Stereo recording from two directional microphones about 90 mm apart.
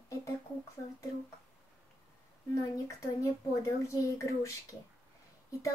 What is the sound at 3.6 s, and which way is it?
Speech, 35° left (ahead or behind).